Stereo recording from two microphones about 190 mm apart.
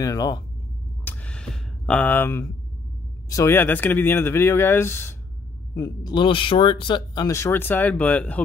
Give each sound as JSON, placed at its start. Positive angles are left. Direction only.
{"t": 0.0, "sound": "speech", "side_deg": 15}
{"t": 1.0, "sound": "a sound", "side_deg": 5}
{"t": 3.3, "sound": "speech", "side_deg": 15}